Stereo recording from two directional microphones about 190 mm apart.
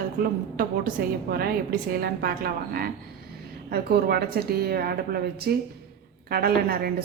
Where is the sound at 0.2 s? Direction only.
50° right (ahead or behind).